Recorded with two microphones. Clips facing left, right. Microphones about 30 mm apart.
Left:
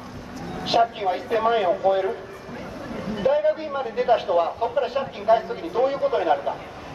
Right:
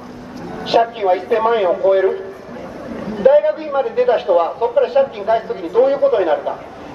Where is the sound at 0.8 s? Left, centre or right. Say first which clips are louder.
Right 6 dB; centre.